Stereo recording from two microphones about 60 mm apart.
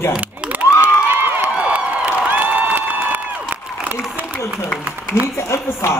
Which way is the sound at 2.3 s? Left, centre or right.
Right.